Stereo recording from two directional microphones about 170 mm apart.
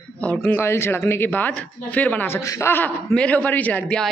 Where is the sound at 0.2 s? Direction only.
10° left (ahead or behind).